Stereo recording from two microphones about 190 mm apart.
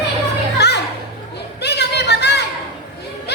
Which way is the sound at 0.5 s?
60° left (ahead or behind).